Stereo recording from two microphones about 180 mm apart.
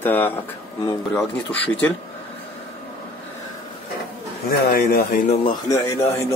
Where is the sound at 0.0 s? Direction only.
10° left (ahead or behind).